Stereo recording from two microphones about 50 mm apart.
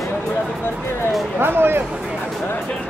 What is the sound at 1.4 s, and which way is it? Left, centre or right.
Speech, right.